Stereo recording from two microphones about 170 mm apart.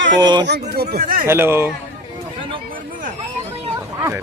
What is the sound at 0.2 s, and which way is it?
Speech, 25° right (ahead or behind).